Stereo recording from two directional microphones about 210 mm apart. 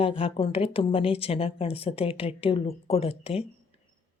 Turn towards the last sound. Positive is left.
turn(degrees=30)  # may be behind; listen again after turning